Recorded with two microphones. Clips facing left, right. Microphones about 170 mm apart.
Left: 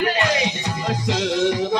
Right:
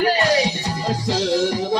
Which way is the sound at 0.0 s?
35° right (ahead or behind).